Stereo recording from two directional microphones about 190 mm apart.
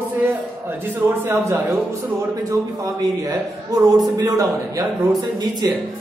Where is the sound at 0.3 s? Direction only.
10° right (ahead or behind).